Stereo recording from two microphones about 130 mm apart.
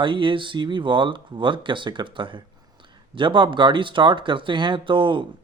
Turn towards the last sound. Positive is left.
turn(degrees=-40)  # may be behind; listen again after turning